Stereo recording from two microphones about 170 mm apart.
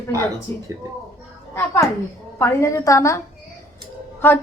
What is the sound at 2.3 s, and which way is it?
Speech, 15° left (ahead or behind).